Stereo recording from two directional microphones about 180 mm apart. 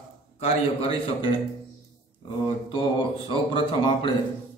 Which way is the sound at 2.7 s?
25° left (ahead or behind).